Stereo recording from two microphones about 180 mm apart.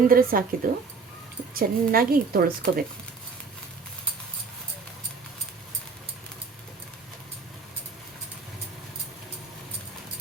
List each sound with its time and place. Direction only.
0.1 s a woman's voice: 50° right (ahead or behind)